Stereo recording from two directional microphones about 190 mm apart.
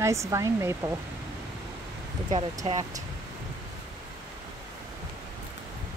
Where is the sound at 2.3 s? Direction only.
30° right (ahead or behind).